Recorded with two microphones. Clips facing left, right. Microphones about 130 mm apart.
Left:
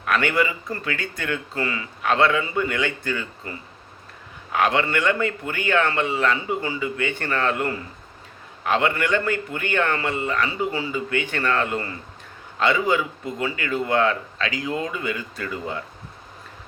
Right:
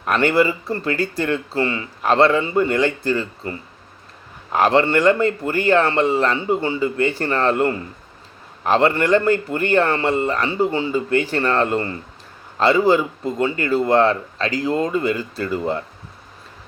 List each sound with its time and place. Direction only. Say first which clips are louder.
0.0 s speech: right 5 dB; 35° right (ahead or behind)
4.5 s speech: right 5 dB; 35° right (ahead or behind)